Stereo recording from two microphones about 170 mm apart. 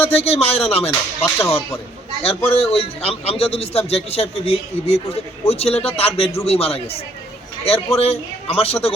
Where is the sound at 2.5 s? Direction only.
35° left (ahead or behind).